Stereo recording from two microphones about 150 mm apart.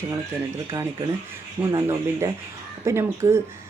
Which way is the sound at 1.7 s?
20° right (ahead or behind).